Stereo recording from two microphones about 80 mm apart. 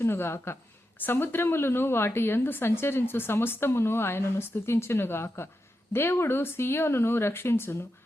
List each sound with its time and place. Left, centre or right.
0.0 s a woman's voice: left